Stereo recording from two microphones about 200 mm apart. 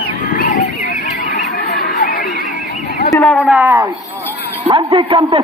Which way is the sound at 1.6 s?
45° left (ahead or behind).